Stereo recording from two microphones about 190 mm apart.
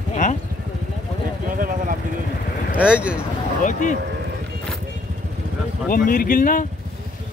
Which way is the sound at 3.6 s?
45° left (ahead or behind).